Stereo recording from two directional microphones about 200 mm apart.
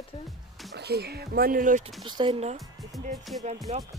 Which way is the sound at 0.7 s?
55° right (ahead or behind).